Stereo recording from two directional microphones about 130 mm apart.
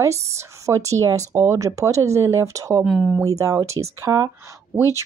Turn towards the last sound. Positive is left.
turn(degrees=-20)  # may be behind; listen again after turning